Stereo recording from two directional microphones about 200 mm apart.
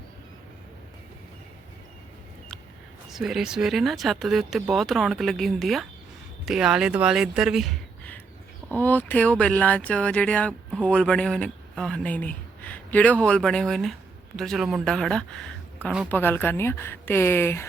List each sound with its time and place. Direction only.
3.1 s speech: centre (ahead or behind)